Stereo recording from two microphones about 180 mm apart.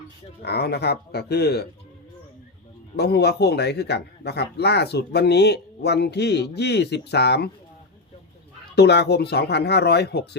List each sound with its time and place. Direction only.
0.4 s speech: 65° left (ahead or behind)
2.9 s a man's voice: 65° left (ahead or behind)
8.7 s a man's voice: 70° left (ahead or behind)